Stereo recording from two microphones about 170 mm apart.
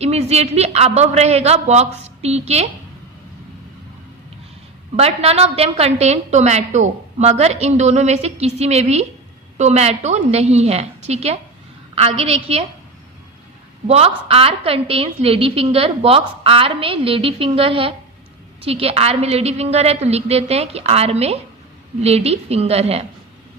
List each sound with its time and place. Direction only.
0.0 s a woman's voice: 40° right (ahead or behind)
4.9 s a woman's voice: 35° right (ahead or behind)
13.8 s a woman's voice: 40° right (ahead or behind)